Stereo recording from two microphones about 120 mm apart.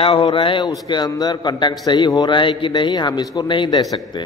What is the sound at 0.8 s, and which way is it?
A man's voice, 35° left (ahead or behind).